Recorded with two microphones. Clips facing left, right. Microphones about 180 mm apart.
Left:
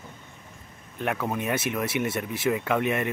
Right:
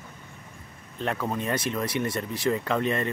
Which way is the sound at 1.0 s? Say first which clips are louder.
Left 1 dB; 10° left (ahead or behind).